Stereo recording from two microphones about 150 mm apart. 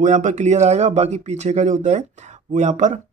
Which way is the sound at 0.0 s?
55° right (ahead or behind).